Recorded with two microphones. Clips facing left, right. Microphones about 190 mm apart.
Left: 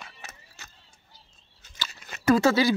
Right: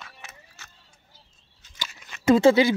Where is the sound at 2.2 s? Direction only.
25° right (ahead or behind).